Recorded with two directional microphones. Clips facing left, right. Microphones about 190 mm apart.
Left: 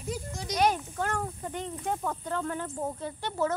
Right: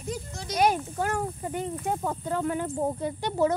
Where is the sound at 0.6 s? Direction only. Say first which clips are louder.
Right 3 dB; 10° right (ahead or behind).